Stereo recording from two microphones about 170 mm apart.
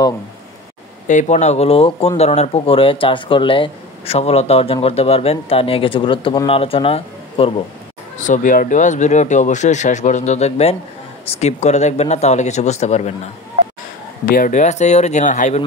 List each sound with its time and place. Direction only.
1.0 s speech: 45° left (ahead or behind)
8.2 s speech: 50° left (ahead or behind)
14.2 s speech: 55° left (ahead or behind)